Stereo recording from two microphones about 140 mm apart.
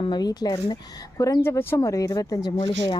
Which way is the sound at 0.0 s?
30° left (ahead or behind).